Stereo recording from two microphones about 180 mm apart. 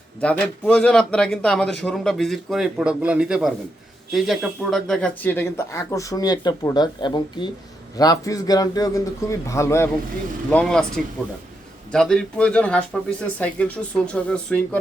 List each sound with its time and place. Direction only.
0.2 s a man's voice: 5° left (ahead or behind)